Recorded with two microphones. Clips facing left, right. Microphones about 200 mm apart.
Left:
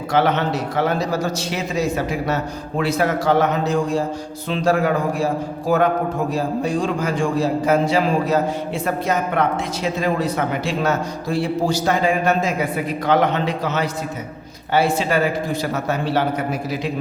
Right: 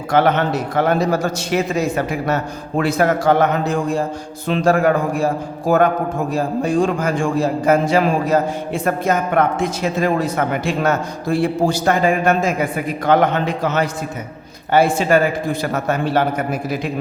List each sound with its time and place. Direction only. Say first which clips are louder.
0.1 s a man's voice: right 3 dB; 50° right (ahead or behind)